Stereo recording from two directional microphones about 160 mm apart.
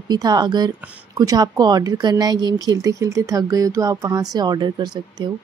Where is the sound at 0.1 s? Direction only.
25° right (ahead or behind).